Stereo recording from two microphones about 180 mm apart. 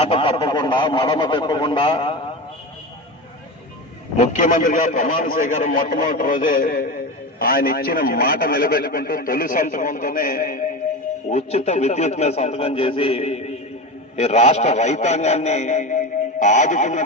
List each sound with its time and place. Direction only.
0.0 s a man's voice: 30° left (ahead or behind)
4.2 s a man's voice: 40° left (ahead or behind)